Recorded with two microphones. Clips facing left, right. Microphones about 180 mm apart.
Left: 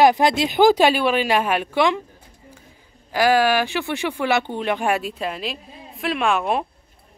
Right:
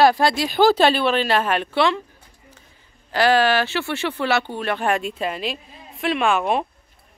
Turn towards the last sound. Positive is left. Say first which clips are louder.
# right 1 dB
turn(degrees=0)  # may be behind; listen again after turning